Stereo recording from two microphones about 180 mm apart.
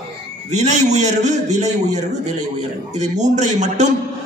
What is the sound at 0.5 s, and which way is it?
A man's voice, 40° right (ahead or behind).